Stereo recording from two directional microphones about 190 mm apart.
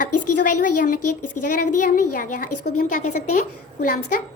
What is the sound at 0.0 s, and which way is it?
A woman's voice, 45° left (ahead or behind).